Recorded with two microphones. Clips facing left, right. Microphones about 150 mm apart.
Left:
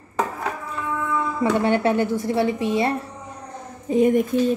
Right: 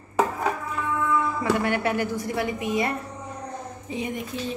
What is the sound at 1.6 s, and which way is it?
A woman's voice, 25° left (ahead or behind).